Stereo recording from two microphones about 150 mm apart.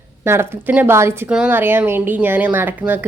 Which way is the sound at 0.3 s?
15° right (ahead or behind).